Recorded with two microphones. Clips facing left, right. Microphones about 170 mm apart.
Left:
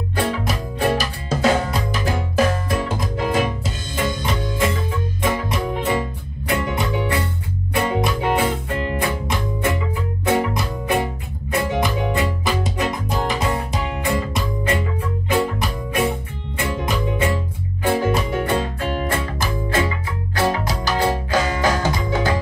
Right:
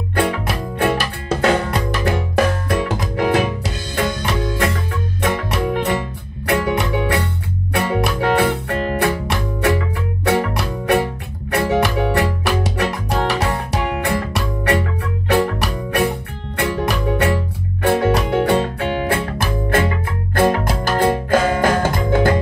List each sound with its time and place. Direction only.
0.1 s music: 60° right (ahead or behind)